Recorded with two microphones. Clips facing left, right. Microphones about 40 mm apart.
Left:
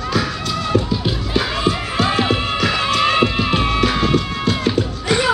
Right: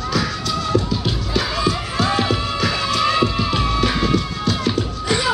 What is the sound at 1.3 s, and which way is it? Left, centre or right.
Music, left.